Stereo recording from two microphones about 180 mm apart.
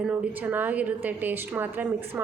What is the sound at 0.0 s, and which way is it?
A woman's voice, 5° right (ahead or behind).